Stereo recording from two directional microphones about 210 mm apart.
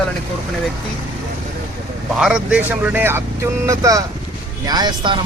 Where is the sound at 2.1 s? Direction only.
5° right (ahead or behind); by 5.2 s 20° right (ahead or behind).